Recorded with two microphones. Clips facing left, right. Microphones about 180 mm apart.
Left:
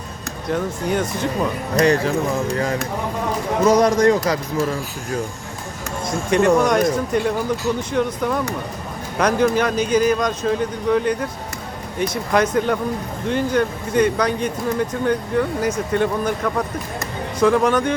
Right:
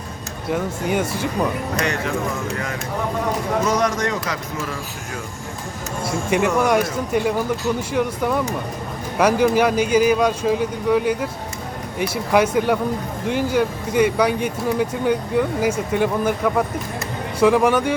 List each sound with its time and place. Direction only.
0.5 s speech: 10° right (ahead or behind)
1.7 s a man's voice: 35° left (ahead or behind)
3.7 s a man's voice: 35° left (ahead or behind)
6.1 s speech: 5° right (ahead or behind)